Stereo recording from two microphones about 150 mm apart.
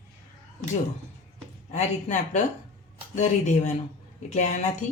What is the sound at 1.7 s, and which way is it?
Speech, 50° left (ahead or behind).